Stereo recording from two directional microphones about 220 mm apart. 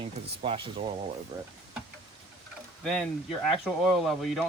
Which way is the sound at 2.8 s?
Centre (ahead or behind).